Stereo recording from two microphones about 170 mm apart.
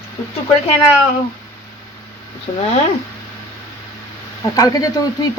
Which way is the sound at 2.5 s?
45° left (ahead or behind).